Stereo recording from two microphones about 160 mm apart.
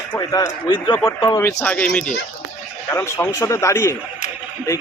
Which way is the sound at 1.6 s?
10° left (ahead or behind).